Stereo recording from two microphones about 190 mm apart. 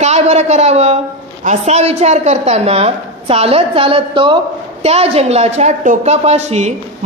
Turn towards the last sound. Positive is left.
turn(degrees=-35)  # may be behind; listen again after turning